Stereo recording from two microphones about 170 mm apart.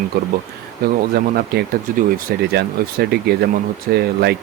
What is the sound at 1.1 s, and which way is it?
Speech, 60° right (ahead or behind).